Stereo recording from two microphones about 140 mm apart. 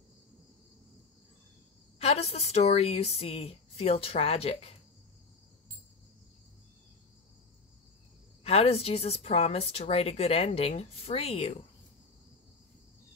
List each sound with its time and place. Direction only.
2.0 s a woman's voice: 45° left (ahead or behind)
8.5 s a woman's voice: 45° left (ahead or behind)